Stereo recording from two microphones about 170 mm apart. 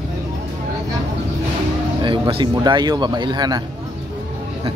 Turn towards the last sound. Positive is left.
turn(degrees=-25)  # may be behind; listen again after turning